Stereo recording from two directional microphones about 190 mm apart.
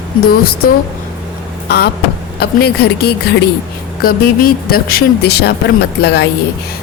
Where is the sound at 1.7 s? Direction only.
60° left (ahead or behind).